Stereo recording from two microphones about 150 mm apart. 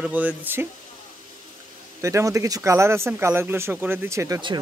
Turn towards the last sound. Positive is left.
turn(degrees=-20)  # may be behind; listen again after turning